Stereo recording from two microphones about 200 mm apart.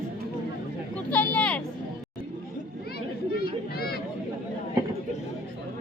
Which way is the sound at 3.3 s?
50° left (ahead or behind).